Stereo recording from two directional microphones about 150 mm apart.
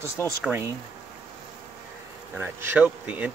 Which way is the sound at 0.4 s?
10° right (ahead or behind).